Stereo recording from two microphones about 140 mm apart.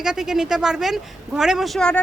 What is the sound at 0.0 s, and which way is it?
A woman's voice, 5° right (ahead or behind).